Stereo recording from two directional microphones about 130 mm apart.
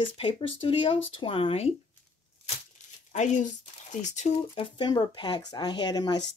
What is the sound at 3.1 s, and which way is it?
Speech, 65° left (ahead or behind).